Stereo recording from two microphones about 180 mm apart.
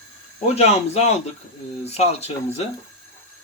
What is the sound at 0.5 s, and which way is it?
Speech, 35° left (ahead or behind).